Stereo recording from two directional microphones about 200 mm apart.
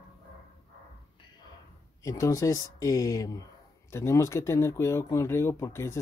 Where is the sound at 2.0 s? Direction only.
15° left (ahead or behind).